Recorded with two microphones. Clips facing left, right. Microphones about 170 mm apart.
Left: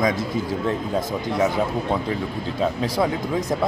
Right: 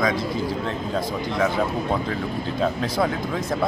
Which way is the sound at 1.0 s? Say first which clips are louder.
Right 1 dB; 20° left (ahead or behind).